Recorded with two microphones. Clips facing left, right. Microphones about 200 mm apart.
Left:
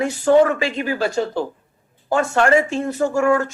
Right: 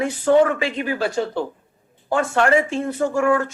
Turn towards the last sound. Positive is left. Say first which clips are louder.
# left 1 dB
turn(degrees=40)  # may be behind; listen again after turning